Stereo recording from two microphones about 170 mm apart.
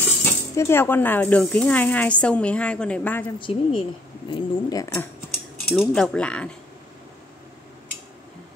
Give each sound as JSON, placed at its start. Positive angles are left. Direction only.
{"t": 0.2, "sound": "speech", "side_deg": 15}
{"t": 3.3, "sound": "speech", "side_deg": 30}
{"t": 5.7, "sound": "speech", "side_deg": 5}